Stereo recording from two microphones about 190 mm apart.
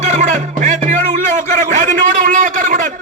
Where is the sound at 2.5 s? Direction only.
45° right (ahead or behind).